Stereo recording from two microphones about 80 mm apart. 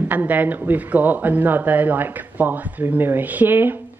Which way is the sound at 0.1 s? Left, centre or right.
Right.